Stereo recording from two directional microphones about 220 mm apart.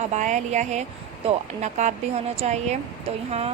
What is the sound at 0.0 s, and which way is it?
Speech, 30° right (ahead or behind).